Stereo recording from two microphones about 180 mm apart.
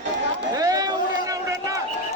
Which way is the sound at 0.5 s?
20° right (ahead or behind).